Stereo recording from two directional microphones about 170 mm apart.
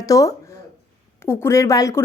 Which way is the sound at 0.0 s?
20° left (ahead or behind).